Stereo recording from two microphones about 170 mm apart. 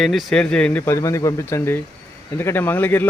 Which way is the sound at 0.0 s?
Centre (ahead or behind).